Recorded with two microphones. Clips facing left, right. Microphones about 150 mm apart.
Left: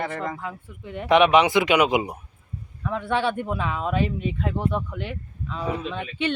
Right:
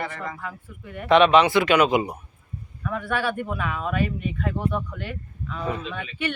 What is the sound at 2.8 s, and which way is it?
Speech, 25° left (ahead or behind).